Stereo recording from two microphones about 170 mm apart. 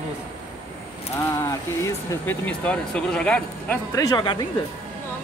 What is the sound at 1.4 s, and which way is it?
Speech, 15° left (ahead or behind).